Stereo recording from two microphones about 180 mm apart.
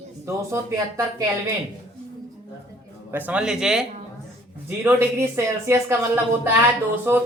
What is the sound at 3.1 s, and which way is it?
Speech, 10° right (ahead or behind).